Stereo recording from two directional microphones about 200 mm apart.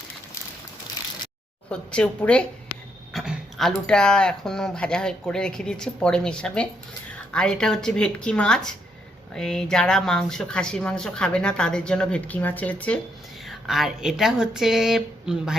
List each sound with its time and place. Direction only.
1.7 s speech: 5° left (ahead or behind)